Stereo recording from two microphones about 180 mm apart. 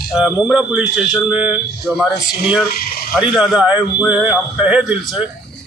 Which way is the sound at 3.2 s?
5° right (ahead or behind).